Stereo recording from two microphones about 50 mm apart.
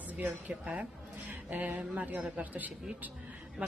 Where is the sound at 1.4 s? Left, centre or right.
Right.